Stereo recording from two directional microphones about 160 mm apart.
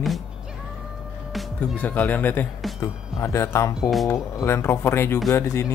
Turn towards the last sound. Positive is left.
turn(degrees=15)  # may be behind; listen again after turning